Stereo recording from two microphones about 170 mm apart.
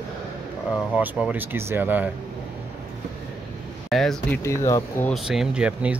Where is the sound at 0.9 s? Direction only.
10° right (ahead or behind).